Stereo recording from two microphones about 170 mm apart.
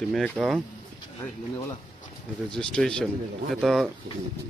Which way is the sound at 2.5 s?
5° left (ahead or behind).